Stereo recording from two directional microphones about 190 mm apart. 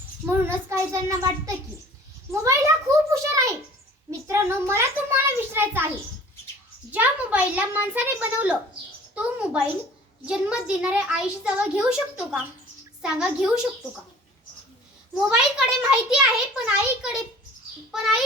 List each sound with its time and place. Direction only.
0.3 s a child's voice: 15° right (ahead or behind)
6.9 s a child's voice: 10° right (ahead or behind)
15.3 s a child's voice: 5° right (ahead or behind)